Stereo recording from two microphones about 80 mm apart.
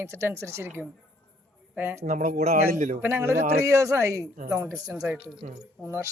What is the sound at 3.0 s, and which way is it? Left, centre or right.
Speech, right.